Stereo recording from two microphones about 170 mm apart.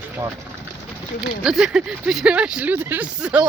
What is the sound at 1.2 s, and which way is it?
Speech, 5° right (ahead or behind).